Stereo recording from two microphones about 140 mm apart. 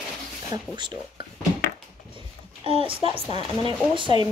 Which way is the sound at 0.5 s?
35° right (ahead or behind).